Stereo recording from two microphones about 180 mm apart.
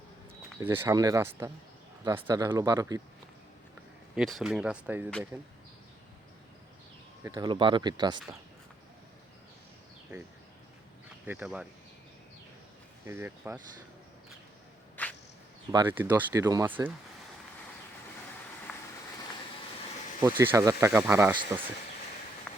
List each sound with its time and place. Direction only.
0.6 s speech: 15° right (ahead or behind)
4.1 s speech: centre (ahead or behind)
7.3 s speech: 25° right (ahead or behind)
11.3 s speech: 5° right (ahead or behind)
13.1 s speech: 10° right (ahead or behind)
15.0 s a sound: 10° left (ahead or behind)
15.9 s speech: 10° right (ahead or behind)
18.7 s vehicle: centre (ahead or behind)
20.2 s speech: 10° right (ahead or behind)
22.5 s a sound: 5° left (ahead or behind)